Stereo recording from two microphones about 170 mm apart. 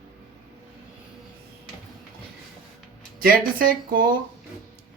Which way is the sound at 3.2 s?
55° right (ahead or behind).